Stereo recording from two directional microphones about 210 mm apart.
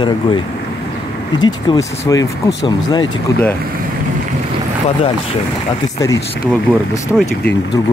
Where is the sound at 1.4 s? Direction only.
20° left (ahead or behind).